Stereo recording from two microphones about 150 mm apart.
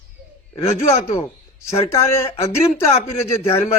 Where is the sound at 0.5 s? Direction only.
45° left (ahead or behind).